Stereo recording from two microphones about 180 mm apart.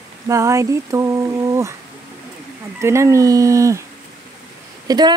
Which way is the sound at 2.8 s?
15° right (ahead or behind).